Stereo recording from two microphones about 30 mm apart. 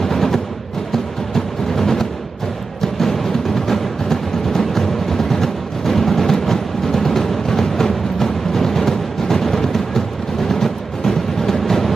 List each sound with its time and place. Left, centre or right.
0.0 s music: centre